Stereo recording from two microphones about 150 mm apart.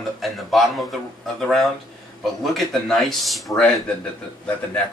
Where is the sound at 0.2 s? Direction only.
Centre (ahead or behind).